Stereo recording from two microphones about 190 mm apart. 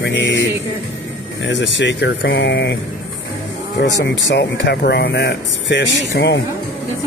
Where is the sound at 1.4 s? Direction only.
70° left (ahead or behind).